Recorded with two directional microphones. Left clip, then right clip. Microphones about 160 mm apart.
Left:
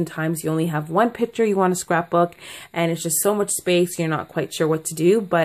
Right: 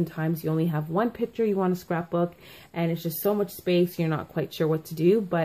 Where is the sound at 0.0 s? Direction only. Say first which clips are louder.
Left 5 dB; 20° left (ahead or behind).